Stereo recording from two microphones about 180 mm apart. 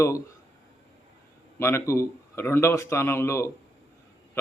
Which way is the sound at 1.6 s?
15° left (ahead or behind).